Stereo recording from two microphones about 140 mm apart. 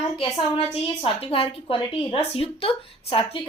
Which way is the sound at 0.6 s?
45° left (ahead or behind).